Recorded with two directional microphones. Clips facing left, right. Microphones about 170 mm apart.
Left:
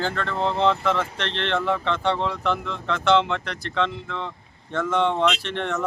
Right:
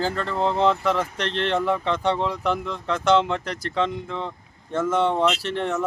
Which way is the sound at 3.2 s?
40° right (ahead or behind).